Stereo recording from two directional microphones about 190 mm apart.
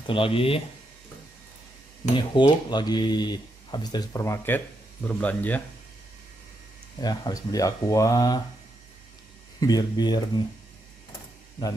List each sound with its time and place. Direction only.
0.0 s speech: 25° left (ahead or behind)
2.1 s speech: 25° left (ahead or behind); by 5.6 s 10° left (ahead or behind)
7.0 s speech: 20° left (ahead or behind)
9.6 s speech: 20° left (ahead or behind)